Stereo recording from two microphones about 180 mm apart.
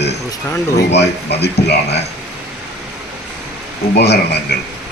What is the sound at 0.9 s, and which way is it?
Speech, 70° left (ahead or behind).